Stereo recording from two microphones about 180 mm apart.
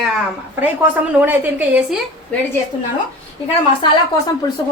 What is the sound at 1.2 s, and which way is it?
Speech, 10° right (ahead or behind).